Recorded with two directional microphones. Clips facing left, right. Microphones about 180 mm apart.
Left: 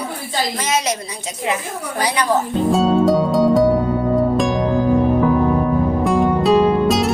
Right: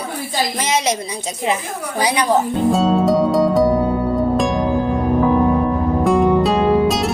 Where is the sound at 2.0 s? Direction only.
15° right (ahead or behind).